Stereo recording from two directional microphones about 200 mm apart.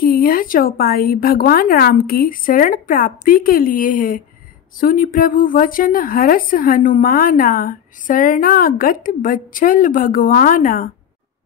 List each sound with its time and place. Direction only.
0.0 s a woman's voice: 45° left (ahead or behind)